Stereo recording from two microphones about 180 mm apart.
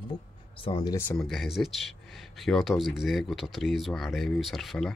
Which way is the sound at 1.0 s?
5° left (ahead or behind).